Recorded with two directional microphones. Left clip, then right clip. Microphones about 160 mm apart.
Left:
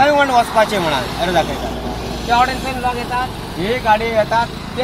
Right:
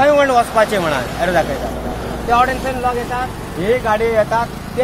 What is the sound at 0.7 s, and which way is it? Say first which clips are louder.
A man's voice: even; 5° left (ahead or behind).